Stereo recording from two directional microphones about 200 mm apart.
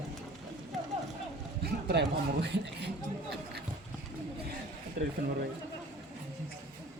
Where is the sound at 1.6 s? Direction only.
55° right (ahead or behind).